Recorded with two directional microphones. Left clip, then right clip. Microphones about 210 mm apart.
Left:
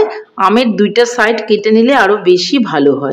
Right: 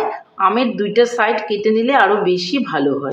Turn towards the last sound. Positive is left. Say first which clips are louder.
# left 7 dB
turn(degrees=45)  # may be behind; listen again after turning